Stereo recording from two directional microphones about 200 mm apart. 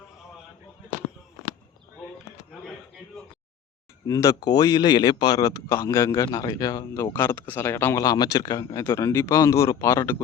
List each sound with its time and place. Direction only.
4.0 s speech: 15° left (ahead or behind)